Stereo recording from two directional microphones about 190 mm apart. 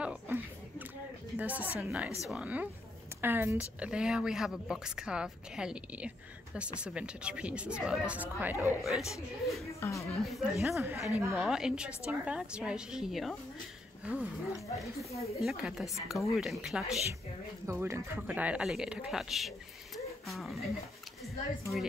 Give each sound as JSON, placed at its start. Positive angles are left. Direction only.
{"t": 0.0, "sound": "a sound", "side_deg": -5}
{"t": 1.3, "sound": "speech", "side_deg": -10}
{"t": 9.8, "sound": "speech", "side_deg": 15}
{"t": 10.0, "sound": "speech", "side_deg": 0}
{"t": 10.8, "sound": "speech", "side_deg": -10}
{"t": 15.4, "sound": "speech", "side_deg": 0}
{"t": 17.6, "sound": "speech", "side_deg": -15}